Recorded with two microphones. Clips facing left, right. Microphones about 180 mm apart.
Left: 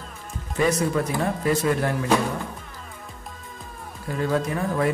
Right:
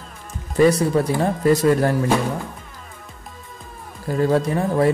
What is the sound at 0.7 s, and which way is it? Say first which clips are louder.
Speech: right 3 dB; 35° right (ahead or behind).